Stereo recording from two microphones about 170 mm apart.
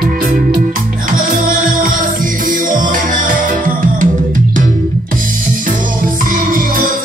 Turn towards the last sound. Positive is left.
turn(degrees=-55)  # may be behind; listen again after turning